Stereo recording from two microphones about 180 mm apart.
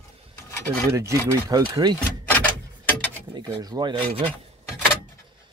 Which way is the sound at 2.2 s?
10° left (ahead or behind).